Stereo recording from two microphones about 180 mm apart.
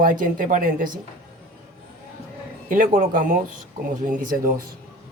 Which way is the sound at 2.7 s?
50° right (ahead or behind).